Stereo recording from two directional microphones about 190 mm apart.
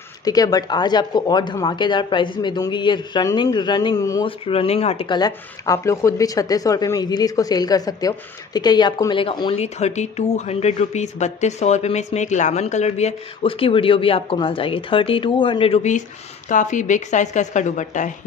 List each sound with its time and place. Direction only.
0.2 s speech: 20° left (ahead or behind)
4.5 s speech: 30° left (ahead or behind)